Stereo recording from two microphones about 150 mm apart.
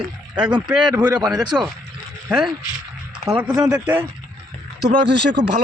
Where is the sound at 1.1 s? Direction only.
25° right (ahead or behind).